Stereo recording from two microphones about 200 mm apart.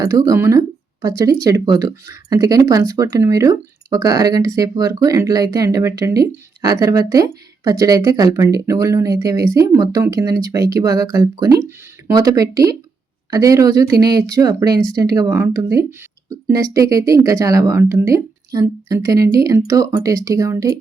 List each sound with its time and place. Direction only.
0.0 s speech: 15° right (ahead or behind)